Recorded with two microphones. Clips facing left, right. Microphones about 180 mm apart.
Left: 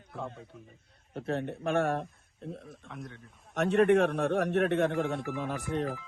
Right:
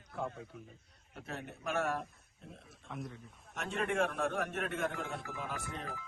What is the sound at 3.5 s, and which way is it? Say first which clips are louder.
Speech: left 11 dB; 70° left (ahead or behind).